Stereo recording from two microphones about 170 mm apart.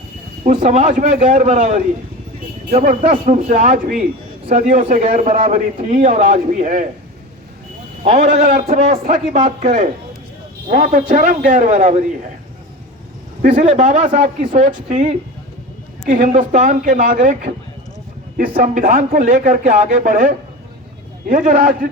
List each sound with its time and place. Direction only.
0.4 s speech: 45° right (ahead or behind)
8.0 s speech: 40° right (ahead or behind)
13.5 s speech: 35° right (ahead or behind); by 21.8 s 55° right (ahead or behind)